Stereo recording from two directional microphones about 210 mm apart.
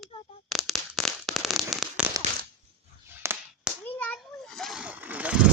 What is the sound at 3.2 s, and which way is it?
Clapping, 10° right (ahead or behind).